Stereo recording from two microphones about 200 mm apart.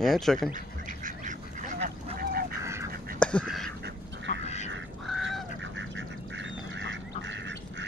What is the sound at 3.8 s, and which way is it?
Duck, 65° right (ahead or behind).